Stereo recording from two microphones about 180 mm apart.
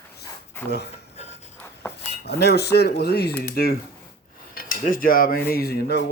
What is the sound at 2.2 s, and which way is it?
Cutlery, 65° left (ahead or behind).